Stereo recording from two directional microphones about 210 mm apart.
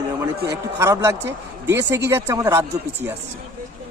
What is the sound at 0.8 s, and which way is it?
Speech, 10° right (ahead or behind).